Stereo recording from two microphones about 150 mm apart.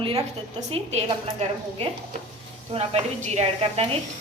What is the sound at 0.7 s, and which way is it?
A woman's voice, 45° right (ahead or behind).